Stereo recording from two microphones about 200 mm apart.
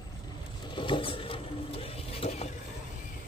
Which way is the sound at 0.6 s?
25° left (ahead or behind).